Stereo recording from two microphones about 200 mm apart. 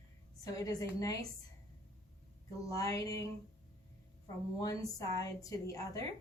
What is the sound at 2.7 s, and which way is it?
Speech, 15° left (ahead or behind).